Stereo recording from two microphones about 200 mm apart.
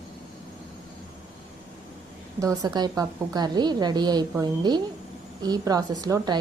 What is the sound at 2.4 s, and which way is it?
A woman's voice, 15° right (ahead or behind).